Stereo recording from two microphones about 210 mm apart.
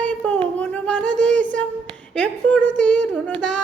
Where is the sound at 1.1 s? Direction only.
35° right (ahead or behind).